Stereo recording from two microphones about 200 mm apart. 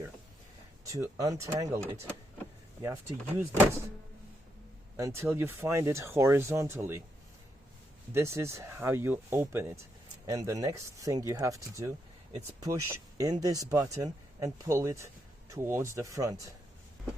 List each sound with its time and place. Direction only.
0.9 s speech: 15° right (ahead or behind)
4.9 s speech: 15° right (ahead or behind)
8.1 s speech: 15° right (ahead or behind)